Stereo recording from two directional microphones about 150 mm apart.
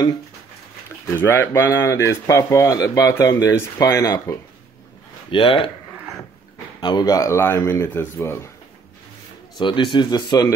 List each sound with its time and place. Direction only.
1.1 s speech: 15° left (ahead or behind)
5.3 s speech: 35° left (ahead or behind)
6.8 s speech: 30° left (ahead or behind)
9.6 s speech: 35° left (ahead or behind)